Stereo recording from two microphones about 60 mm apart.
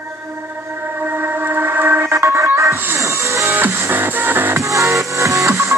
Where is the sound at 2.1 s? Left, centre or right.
Right.